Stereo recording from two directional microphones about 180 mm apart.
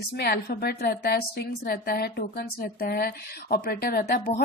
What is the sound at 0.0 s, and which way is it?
A woman's voice, 60° left (ahead or behind).